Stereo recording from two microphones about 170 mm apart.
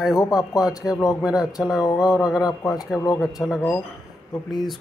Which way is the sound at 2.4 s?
25° left (ahead or behind).